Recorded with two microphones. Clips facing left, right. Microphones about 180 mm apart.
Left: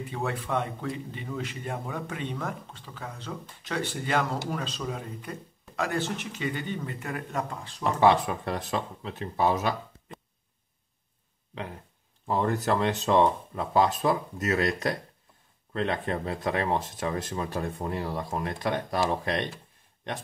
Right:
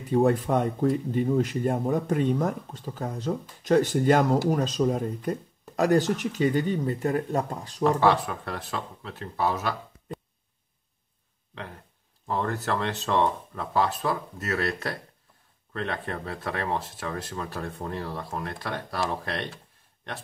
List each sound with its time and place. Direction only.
0.1 s speech: 45° right (ahead or behind)
7.8 s speech: 15° left (ahead or behind)
12.3 s speech: 15° left (ahead or behind)